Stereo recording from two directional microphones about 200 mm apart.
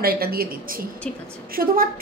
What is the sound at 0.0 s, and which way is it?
A woman's voice, 50° right (ahead or behind).